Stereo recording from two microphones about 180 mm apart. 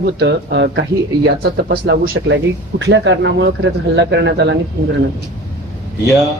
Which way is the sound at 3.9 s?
75° right (ahead or behind).